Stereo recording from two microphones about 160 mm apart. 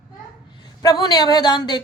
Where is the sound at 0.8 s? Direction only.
25° left (ahead or behind).